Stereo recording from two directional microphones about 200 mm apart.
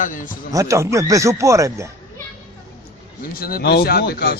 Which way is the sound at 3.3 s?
50° left (ahead or behind).